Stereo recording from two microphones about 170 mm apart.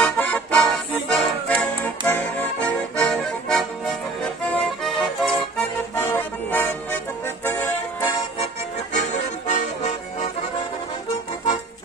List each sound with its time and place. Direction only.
0.0 s accordion: 10° left (ahead or behind)
5.9 s music: 15° left (ahead or behind)
8.9 s accordion: 45° left (ahead or behind)